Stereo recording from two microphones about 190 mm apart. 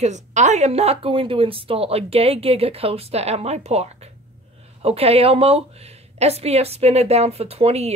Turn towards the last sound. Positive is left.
turn(degrees=-35)  # may be behind; listen again after turning